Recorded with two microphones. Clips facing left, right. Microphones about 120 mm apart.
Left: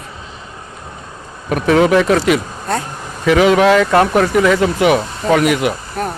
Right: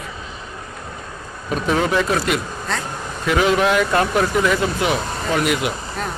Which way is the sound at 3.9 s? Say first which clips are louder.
Left 6 dB; 65° left (ahead or behind).